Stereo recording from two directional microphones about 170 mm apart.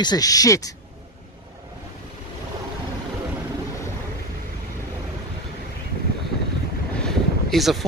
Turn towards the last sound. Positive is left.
turn(degrees=0)  # may be behind; listen again after turning